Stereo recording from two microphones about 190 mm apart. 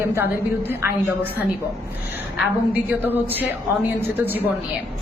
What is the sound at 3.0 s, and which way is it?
A man's voice, 10° right (ahead or behind).